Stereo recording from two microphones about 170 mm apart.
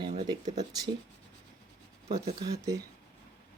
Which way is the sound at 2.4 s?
20° right (ahead or behind).